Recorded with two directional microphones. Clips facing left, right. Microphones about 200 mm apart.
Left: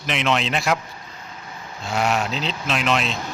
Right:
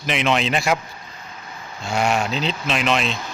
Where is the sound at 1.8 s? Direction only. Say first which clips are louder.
Right 1 dB; 5° left (ahead or behind).